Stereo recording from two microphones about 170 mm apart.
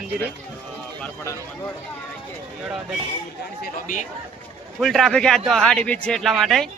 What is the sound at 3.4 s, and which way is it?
Speech, 60° left (ahead or behind).